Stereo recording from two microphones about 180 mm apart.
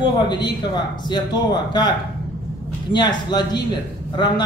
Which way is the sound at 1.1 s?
25° left (ahead or behind).